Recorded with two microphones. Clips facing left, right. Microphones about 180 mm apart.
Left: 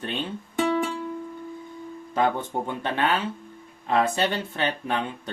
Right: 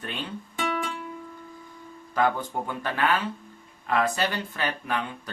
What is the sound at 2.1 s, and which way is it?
Speech, 25° left (ahead or behind).